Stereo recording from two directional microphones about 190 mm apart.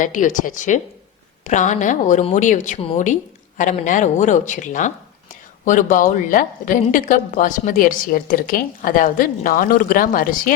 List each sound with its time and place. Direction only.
0.0 s a woman's voice: 45° left (ahead or behind)